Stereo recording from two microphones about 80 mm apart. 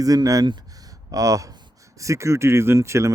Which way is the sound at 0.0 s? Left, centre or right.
Right.